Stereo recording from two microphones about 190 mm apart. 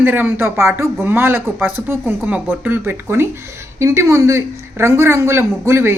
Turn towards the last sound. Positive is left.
turn(degrees=-15)  # may be behind; listen again after turning